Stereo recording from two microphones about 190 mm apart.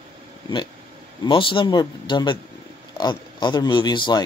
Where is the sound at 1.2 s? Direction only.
25° left (ahead or behind).